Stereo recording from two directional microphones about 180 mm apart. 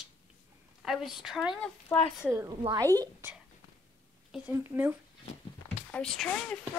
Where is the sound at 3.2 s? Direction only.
10° right (ahead or behind).